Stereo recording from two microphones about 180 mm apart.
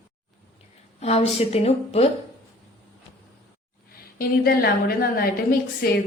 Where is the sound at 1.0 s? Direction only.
35° left (ahead or behind).